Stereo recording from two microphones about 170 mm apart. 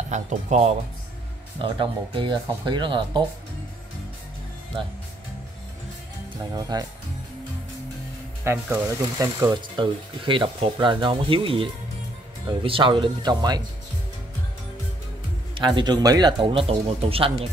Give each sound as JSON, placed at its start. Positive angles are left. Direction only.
{"t": 0.1, "sound": "speech", "side_deg": -45}
{"t": 1.6, "sound": "speech", "side_deg": -30}
{"t": 6.3, "sound": "speech", "side_deg": -25}
{"t": 8.5, "sound": "speech", "side_deg": -15}
{"t": 15.5, "sound": "speech", "side_deg": -25}